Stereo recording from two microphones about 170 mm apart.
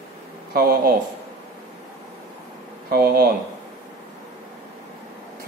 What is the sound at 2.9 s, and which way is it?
Speech, 60° right (ahead or behind).